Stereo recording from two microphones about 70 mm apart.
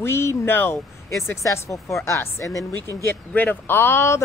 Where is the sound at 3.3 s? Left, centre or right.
Left.